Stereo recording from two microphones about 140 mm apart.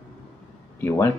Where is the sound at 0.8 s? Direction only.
15° left (ahead or behind).